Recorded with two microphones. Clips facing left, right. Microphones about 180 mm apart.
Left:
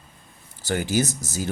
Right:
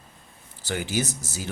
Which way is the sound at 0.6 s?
45° left (ahead or behind).